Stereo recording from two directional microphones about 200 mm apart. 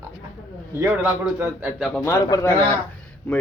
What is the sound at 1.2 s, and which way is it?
Speech, 5° right (ahead or behind).